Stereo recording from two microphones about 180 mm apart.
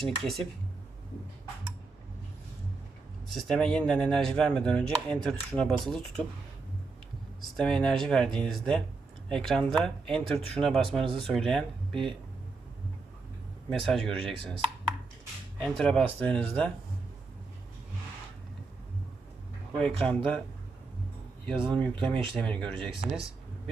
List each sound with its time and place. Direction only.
0.0 s speech: centre (ahead or behind)
3.2 s speech: centre (ahead or behind)
7.5 s speech: 5° left (ahead or behind)
13.7 s speech: 5° left (ahead or behind)
19.8 s speech: 5° left (ahead or behind)
21.5 s speech: 25° right (ahead or behind)
22.4 s speech: 5° left (ahead or behind)